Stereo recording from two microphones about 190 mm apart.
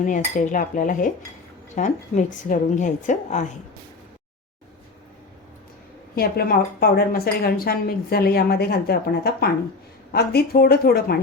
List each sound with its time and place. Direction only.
0.0 s cutlery: 45° left (ahead or behind)
1.7 s a woman's voice: 40° left (ahead or behind)
6.1 s a woman's voice: 50° left (ahead or behind)